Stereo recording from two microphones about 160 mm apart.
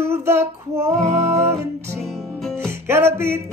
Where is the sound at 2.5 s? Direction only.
15° right (ahead or behind).